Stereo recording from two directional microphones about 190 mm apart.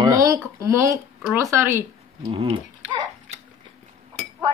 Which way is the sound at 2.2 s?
30° right (ahead or behind).